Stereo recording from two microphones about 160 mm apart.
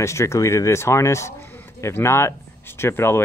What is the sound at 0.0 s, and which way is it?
Speech, 20° left (ahead or behind).